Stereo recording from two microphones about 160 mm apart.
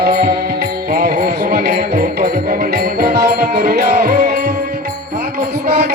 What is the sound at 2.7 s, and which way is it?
Music, 70° right (ahead or behind).